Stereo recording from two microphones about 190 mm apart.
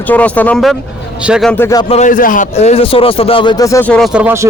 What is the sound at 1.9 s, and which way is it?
A man's voice, 40° left (ahead or behind).